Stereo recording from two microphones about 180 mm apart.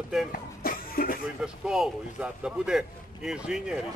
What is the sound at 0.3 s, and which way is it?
Music, 55° left (ahead or behind).